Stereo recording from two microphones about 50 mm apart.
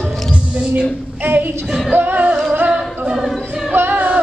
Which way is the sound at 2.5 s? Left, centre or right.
Right.